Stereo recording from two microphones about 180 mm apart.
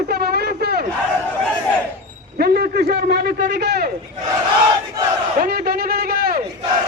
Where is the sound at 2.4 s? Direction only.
60° right (ahead or behind).